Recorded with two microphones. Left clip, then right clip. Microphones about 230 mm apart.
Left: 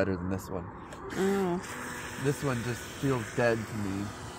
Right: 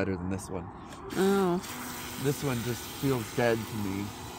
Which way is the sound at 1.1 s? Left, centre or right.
Right.